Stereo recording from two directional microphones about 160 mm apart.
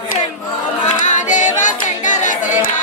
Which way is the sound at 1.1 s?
50° left (ahead or behind).